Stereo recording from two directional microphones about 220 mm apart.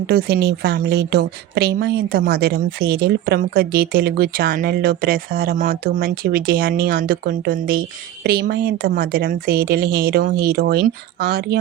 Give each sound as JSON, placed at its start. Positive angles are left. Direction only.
{"t": 0.1, "sound": "a woman's voice", "side_deg": -45}